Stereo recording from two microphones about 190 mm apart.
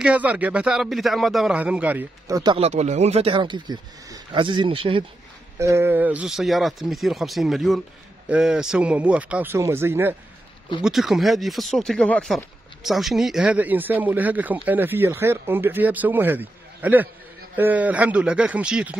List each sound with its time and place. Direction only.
0.0 s speech: 5° right (ahead or behind); by 5.0 s 25° right (ahead or behind)
5.6 s speech: 15° right (ahead or behind)
10.8 s speech: centre (ahead or behind)